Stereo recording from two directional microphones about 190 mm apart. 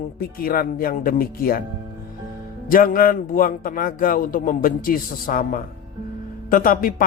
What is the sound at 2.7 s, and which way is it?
A man's voice, 45° left (ahead or behind).